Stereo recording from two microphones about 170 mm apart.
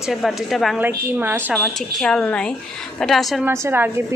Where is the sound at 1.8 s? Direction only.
5° left (ahead or behind).